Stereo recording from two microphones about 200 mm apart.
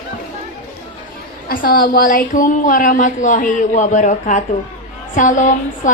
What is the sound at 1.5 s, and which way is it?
A woman's voice, 45° left (ahead or behind).